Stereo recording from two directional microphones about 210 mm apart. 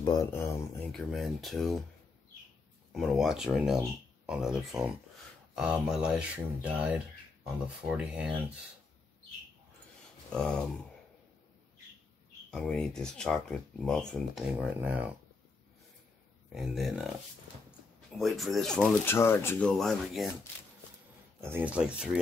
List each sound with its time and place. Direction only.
0.0 s speech: 15° left (ahead or behind)
1.1 s speech: centre (ahead or behind)
2.9 s speech: centre (ahead or behind)
10.3 s speech: 5° left (ahead or behind)
12.4 s speech: 5° left (ahead or behind)
16.5 s speech: centre (ahead or behind)
21.4 s speech: 10° right (ahead or behind)